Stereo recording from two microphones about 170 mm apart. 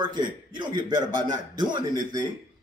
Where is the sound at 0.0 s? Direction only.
25° right (ahead or behind).